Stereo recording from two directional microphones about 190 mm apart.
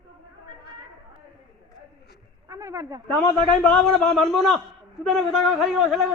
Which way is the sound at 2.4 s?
15° right (ahead or behind).